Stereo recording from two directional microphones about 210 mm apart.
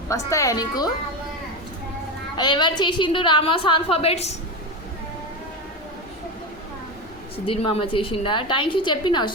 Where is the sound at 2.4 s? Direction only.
20° left (ahead or behind).